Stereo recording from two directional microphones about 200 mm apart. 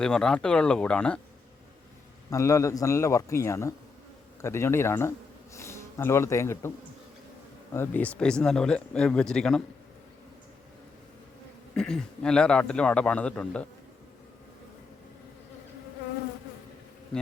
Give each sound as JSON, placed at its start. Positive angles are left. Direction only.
{"t": 0.0, "sound": "speech", "side_deg": 5}
{"t": 2.3, "sound": "a man's voice", "side_deg": 15}
{"t": 7.7, "sound": "speech", "side_deg": 10}
{"t": 11.7, "sound": "speech", "side_deg": 5}